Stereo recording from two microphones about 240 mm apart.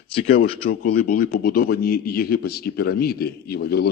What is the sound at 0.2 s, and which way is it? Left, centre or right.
A man's voice, left.